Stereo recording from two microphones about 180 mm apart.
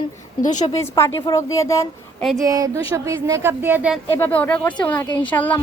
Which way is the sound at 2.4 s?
20° right (ahead or behind).